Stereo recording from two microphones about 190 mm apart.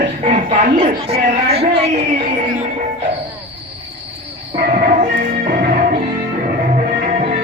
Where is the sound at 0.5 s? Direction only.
35° right (ahead or behind).